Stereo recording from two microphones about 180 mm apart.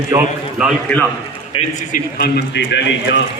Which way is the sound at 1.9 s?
60° left (ahead or behind).